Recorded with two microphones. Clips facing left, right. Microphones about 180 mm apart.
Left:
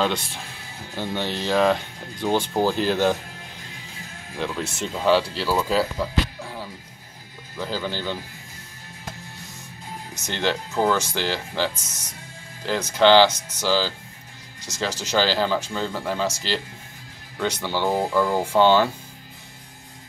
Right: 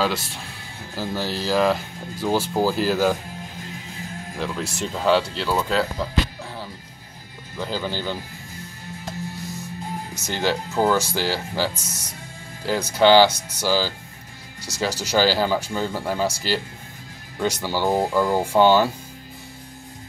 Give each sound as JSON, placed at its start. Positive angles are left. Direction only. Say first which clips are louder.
{"t": 0.0, "sound": "speech", "louder": "even", "side_deg": 0}
{"t": 4.4, "sound": "speech", "louder": "even", "side_deg": 0}
{"t": 10.2, "sound": "speech", "louder": "right 1 dB", "side_deg": -5}